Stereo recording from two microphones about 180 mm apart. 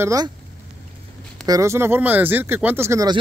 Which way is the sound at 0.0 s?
20° right (ahead or behind).